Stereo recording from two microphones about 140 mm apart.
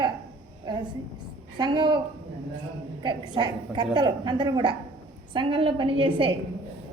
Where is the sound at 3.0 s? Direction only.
30° right (ahead or behind).